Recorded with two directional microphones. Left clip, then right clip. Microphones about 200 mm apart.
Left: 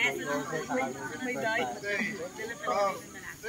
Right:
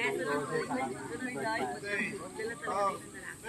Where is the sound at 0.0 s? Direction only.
55° left (ahead or behind).